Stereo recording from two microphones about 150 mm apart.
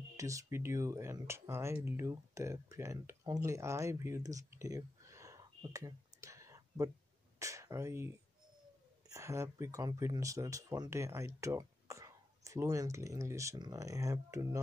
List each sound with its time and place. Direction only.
0.2 s speech: 20° right (ahead or behind)
9.1 s speech: 20° right (ahead or behind)